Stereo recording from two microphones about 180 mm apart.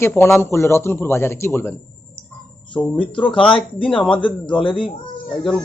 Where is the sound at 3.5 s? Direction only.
30° left (ahead or behind).